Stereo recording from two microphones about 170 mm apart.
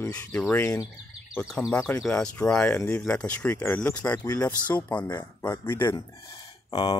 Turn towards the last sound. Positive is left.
turn(degrees=25)  # may be behind; listen again after turning